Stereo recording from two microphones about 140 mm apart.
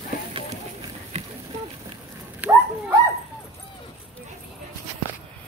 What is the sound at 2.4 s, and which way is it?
Dog, 10° right (ahead or behind).